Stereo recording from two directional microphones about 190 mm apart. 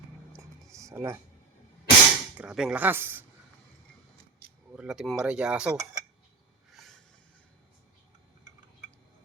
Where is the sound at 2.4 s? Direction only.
5° right (ahead or behind).